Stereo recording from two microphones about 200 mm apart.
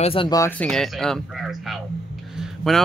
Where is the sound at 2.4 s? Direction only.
Centre (ahead or behind).